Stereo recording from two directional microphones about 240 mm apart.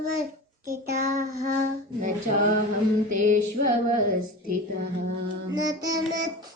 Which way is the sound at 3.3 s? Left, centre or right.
Right.